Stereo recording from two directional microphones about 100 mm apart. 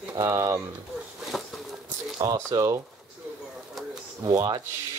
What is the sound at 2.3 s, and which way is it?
Speech, 25° right (ahead or behind).